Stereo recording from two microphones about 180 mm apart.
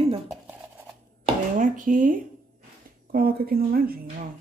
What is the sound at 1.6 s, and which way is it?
Speech, 45° right (ahead or behind).